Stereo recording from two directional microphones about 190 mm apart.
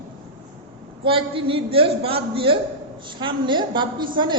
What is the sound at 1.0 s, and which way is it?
A woman's voice, 30° right (ahead or behind).